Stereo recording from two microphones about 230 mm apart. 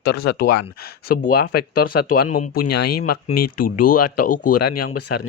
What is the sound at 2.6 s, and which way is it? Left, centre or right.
Speech, left.